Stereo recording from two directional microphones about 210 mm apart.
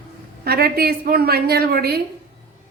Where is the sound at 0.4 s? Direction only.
45° right (ahead or behind).